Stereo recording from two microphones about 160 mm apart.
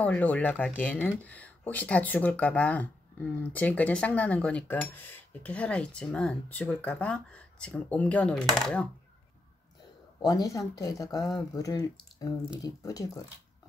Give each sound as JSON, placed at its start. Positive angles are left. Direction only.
{"t": 0.0, "sound": "speech", "side_deg": 10}
{"t": 10.2, "sound": "speech", "side_deg": 20}